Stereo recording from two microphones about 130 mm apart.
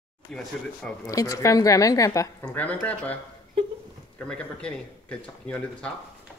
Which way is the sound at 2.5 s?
10° left (ahead or behind).